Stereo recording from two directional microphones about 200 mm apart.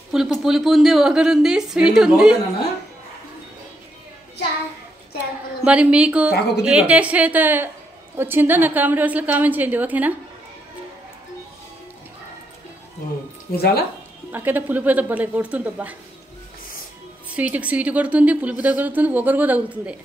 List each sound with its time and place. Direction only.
0.1 s a woman's voice: centre (ahead or behind)
5.6 s a woman's voice: 5° right (ahead or behind)
6.3 s a woman's voice: 55° left (ahead or behind)
6.6 s a woman's voice: 5° right (ahead or behind)
13.6 s speech: 50° left (ahead or behind)
14.3 s a woman's voice: 10° right (ahead or behind)
17.3 s a woman's voice: 5° right (ahead or behind)